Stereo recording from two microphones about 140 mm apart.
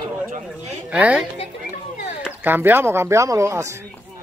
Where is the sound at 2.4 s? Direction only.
15° right (ahead or behind).